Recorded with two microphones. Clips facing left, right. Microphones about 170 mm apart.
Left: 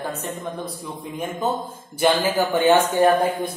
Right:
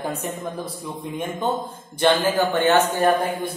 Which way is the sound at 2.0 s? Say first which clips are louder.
Right 1 dB; 10° left (ahead or behind).